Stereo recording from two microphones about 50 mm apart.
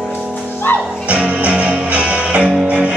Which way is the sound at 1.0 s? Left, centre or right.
Right.